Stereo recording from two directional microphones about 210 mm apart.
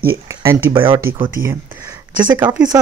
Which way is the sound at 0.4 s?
15° right (ahead or behind).